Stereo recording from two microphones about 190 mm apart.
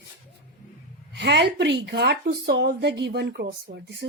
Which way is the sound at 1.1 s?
60° right (ahead or behind).